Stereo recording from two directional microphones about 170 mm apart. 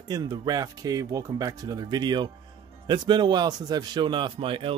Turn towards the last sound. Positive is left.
turn(degrees=-30)  # may be behind; listen again after turning